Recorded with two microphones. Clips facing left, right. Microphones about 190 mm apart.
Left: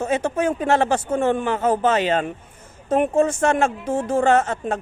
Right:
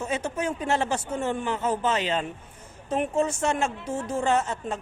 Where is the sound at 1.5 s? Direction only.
55° left (ahead or behind).